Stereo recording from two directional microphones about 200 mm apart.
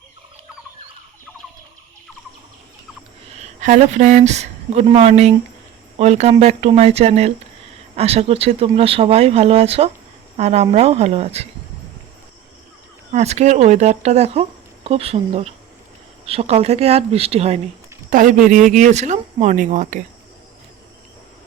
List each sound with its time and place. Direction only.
3.3 s speech: 35° right (ahead or behind)
13.1 s speech: 35° right (ahead or behind)
18.1 s speech: 40° right (ahead or behind)